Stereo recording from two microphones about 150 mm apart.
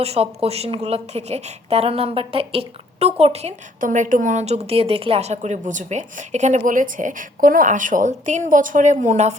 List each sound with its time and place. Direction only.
0.0 s a woman's voice: 45° right (ahead or behind)
3.8 s a woman's voice: 60° right (ahead or behind)